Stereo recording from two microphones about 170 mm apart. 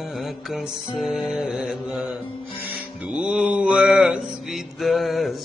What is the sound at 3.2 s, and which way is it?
Mantra, 5° right (ahead or behind).